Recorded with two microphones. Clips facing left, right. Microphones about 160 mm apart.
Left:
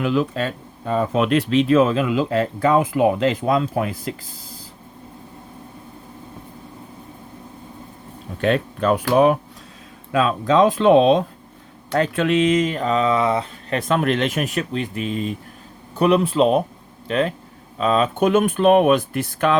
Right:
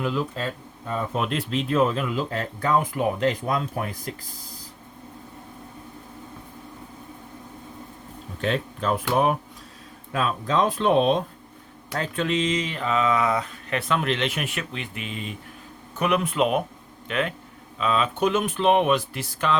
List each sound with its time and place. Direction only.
0.0 s speech: 75° left (ahead or behind)
8.4 s speech: 60° left (ahead or behind); by 11.2 s 90° left
11.9 s speech: 70° left (ahead or behind)